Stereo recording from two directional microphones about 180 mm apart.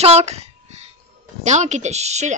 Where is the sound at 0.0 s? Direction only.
35° right (ahead or behind).